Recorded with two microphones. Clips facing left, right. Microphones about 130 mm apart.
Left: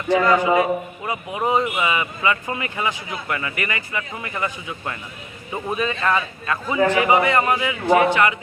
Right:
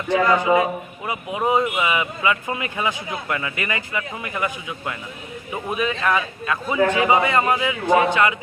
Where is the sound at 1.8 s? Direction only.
15° right (ahead or behind).